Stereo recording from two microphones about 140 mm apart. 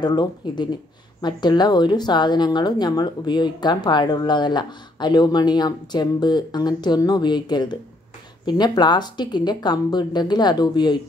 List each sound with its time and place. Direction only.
0.0 s speech: 30° left (ahead or behind)